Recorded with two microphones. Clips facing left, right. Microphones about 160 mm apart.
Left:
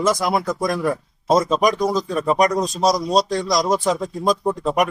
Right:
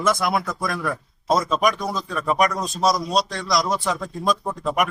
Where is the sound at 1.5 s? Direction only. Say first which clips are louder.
Left 4 dB; 40° left (ahead or behind).